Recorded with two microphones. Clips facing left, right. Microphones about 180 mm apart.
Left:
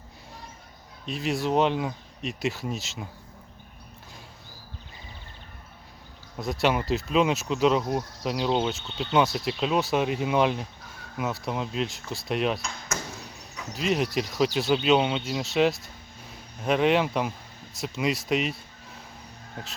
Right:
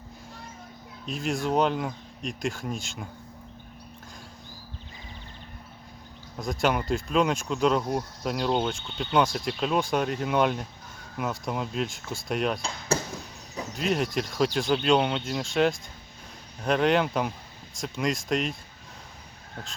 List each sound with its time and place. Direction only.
1.0 s speech: centre (ahead or behind)
6.4 s speech: centre (ahead or behind)
12.9 s arrow: 30° right (ahead or behind)
13.7 s speech: centre (ahead or behind)